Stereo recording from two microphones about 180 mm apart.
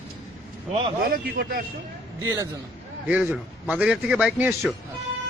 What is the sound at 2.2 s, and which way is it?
A man's voice, 20° right (ahead or behind).